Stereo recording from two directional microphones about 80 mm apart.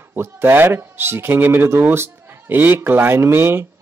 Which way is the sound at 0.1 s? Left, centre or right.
Right.